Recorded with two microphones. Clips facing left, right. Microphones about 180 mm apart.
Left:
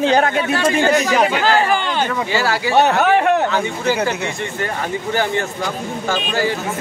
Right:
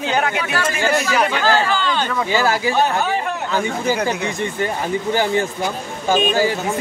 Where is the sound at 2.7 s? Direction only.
70° left (ahead or behind).